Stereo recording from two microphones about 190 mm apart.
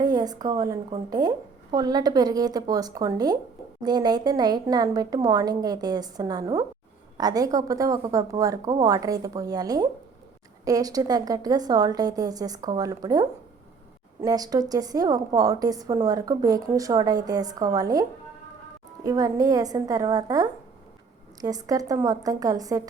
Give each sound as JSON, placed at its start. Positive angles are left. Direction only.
{"t": 0.0, "sound": "a woman's voice", "side_deg": -20}
{"t": 19.0, "sound": "speech", "side_deg": -20}